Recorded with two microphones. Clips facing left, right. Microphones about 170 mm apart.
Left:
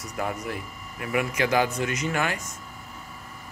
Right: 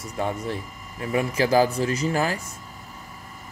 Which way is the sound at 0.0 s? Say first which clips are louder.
Right 3 dB; 30° right (ahead or behind).